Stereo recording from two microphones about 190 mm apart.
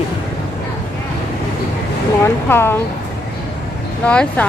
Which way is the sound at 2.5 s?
10° left (ahead or behind).